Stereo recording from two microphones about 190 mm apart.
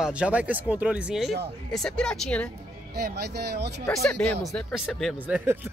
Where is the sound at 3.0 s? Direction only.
55° right (ahead or behind).